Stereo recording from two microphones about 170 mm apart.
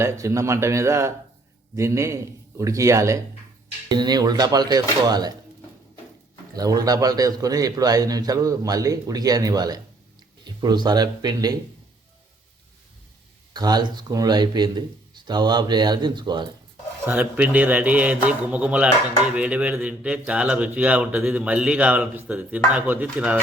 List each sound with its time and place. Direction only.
0.0 s a man's voice: 15° right (ahead or behind)
6.6 s a man's voice: 20° right (ahead or behind)
13.5 s a man's voice: 25° right (ahead or behind)
17.1 s speech: 10° right (ahead or behind)